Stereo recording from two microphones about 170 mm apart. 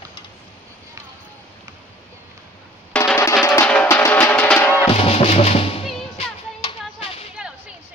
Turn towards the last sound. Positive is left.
turn(degrees=35)  # may be behind; listen again after turning